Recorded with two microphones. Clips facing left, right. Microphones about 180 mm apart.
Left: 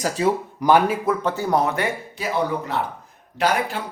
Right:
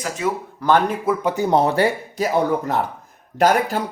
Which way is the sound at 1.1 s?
15° right (ahead or behind).